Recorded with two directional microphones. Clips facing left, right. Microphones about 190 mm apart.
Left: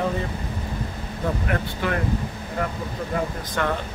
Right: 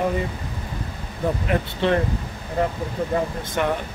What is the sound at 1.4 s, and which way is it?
Speech, 25° right (ahead or behind).